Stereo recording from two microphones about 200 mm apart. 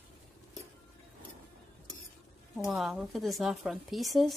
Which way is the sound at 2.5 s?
Centre (ahead or behind).